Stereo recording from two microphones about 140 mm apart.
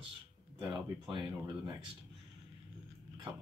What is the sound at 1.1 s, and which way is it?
Speech, 35° right (ahead or behind).